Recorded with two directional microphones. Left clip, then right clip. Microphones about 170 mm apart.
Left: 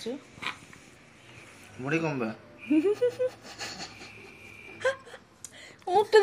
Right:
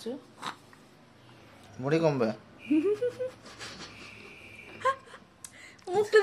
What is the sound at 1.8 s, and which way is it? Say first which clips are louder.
Speech: right 4 dB; 70° right (ahead or behind).